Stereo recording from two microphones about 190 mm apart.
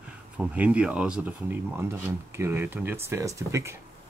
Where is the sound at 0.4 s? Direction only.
5° right (ahead or behind).